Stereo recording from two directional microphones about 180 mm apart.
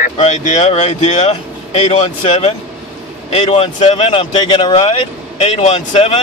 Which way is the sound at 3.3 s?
30° left (ahead or behind).